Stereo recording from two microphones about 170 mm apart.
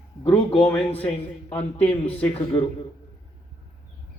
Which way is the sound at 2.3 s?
35° left (ahead or behind).